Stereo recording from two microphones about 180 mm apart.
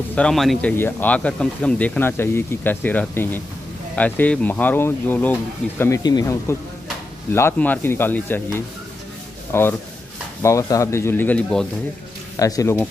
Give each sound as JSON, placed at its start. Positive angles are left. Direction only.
{"t": 0.1, "sound": "a man's voice", "side_deg": 5}
{"t": 12.4, "sound": "speech", "side_deg": 20}